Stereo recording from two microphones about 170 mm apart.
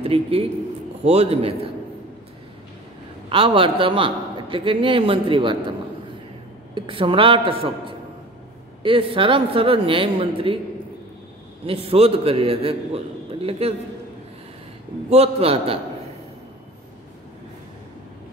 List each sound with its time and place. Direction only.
0.0 s a man's voice: 35° right (ahead or behind)
3.3 s a man's voice: 30° right (ahead or behind)
11.6 s a man's voice: 35° right (ahead or behind)
15.0 s a man's voice: 35° right (ahead or behind)